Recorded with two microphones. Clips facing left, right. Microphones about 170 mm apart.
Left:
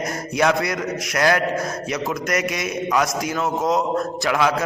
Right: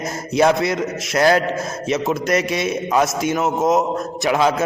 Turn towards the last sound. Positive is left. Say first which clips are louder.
# right 3 dB
turn(degrees=-25)  # may be behind; listen again after turning